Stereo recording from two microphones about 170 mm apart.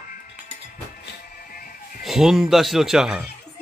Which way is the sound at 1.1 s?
55° left (ahead or behind).